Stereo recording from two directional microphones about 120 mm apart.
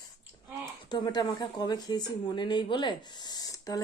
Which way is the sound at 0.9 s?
35° left (ahead or behind).